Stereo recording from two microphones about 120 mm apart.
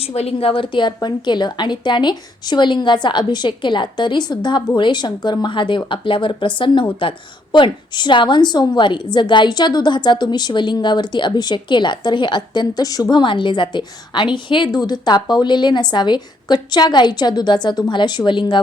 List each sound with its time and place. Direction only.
0.0 s a woman's voice: 60° left (ahead or behind); by 18.6 s 40° left (ahead or behind)